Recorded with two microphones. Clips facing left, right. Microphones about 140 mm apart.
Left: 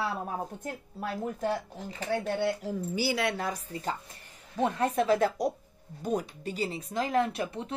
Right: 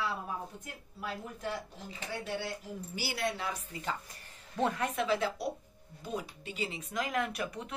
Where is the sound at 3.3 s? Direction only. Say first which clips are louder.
Left 5 dB; 40° left (ahead or behind).